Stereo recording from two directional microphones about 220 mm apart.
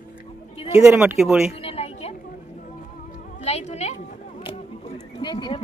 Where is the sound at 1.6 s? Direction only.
25° left (ahead or behind).